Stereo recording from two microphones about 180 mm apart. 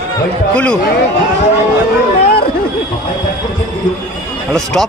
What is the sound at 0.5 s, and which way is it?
Speech, 5° left (ahead or behind).